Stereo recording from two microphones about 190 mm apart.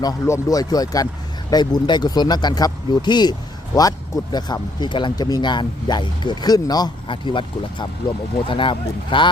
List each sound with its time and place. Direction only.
0.0 s speech: 15° left (ahead or behind)